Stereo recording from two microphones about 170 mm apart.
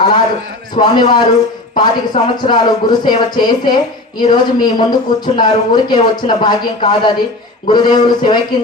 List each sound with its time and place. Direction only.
0.8 s speech: 25° left (ahead or behind)